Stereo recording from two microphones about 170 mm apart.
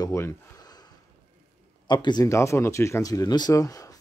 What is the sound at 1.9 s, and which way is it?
Speech, 25° left (ahead or behind).